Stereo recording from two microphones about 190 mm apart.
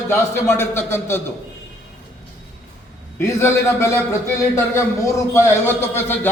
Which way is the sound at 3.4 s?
15° left (ahead or behind).